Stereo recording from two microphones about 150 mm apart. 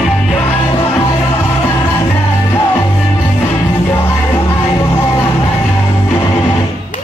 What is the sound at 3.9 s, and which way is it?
Music, 15° left (ahead or behind).